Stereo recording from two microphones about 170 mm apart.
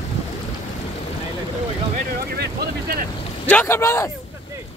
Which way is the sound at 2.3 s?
70° right (ahead or behind).